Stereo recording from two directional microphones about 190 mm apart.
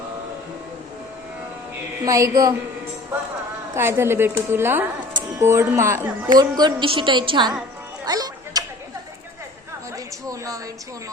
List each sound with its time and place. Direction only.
2.0 s speech: 15° right (ahead or behind)
3.8 s speech: 10° right (ahead or behind)
8.0 s music: 20° right (ahead or behind)
10.2 s speech: 15° right (ahead or behind)